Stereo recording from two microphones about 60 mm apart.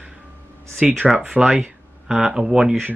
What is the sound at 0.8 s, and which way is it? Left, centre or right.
Speech, centre.